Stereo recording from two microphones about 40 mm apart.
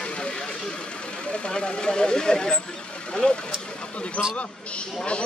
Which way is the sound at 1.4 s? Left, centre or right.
Left.